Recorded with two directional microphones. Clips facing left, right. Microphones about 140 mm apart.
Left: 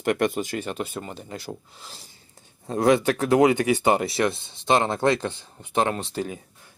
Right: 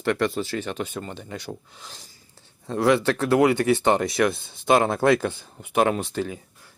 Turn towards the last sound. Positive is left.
turn(degrees=-10)  # may be behind; listen again after turning